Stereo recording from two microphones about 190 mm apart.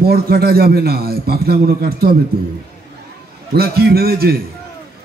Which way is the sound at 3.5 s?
55° right (ahead or behind).